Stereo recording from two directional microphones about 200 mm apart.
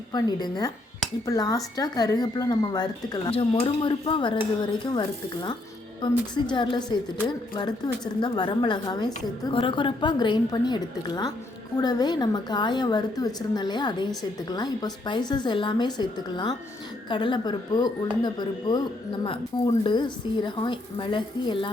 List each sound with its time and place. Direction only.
0.1 s a woman's voice: 20° left (ahead or behind)